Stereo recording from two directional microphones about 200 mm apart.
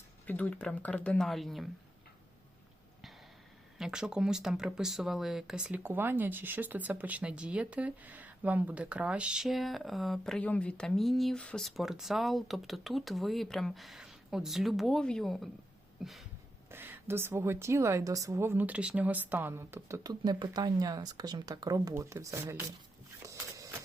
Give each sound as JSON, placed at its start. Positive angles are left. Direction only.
{"t": 0.3, "sound": "speech", "side_deg": 10}
{"t": 3.8, "sound": "a woman's voice", "side_deg": -5}
{"t": 23.2, "sound": "walk", "side_deg": -15}